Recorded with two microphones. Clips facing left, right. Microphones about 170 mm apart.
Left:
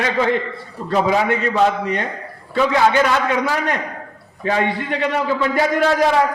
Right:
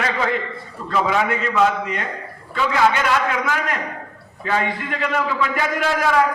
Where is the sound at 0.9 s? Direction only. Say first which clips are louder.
Left 3 dB; 35° left (ahead or behind).